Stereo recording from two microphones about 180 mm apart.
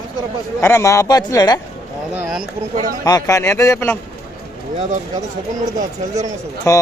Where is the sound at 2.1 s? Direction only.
5° right (ahead or behind).